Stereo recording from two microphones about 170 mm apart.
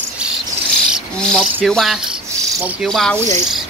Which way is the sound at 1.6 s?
Centre (ahead or behind).